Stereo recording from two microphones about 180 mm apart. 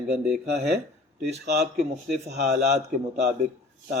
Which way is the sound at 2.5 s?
65° right (ahead or behind).